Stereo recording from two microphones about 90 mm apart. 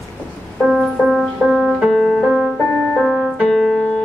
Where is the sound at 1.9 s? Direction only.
5° left (ahead or behind).